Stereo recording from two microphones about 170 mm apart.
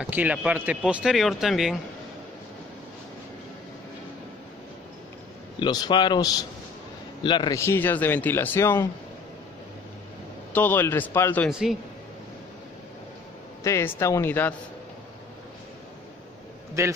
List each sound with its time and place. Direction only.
0.0 s speech: 10° right (ahead or behind)
5.6 s a man's voice: 25° left (ahead or behind)
10.5 s a man's voice: 10° left (ahead or behind)
13.7 s a man's voice: 15° left (ahead or behind)
16.8 s a man's voice: 20° right (ahead or behind)